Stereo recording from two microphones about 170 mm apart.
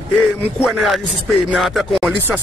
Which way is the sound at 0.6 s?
Centre (ahead or behind).